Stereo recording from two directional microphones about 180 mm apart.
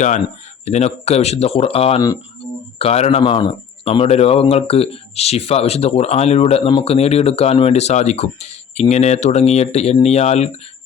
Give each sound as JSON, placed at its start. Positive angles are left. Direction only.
{"t": 0.6, "sound": "speech", "side_deg": 40}